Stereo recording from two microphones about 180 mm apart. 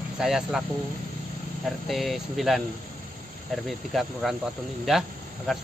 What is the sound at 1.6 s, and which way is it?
Speech, centre (ahead or behind).